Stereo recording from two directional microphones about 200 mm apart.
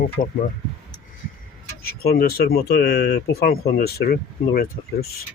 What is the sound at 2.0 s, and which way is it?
Speech, 50° left (ahead or behind).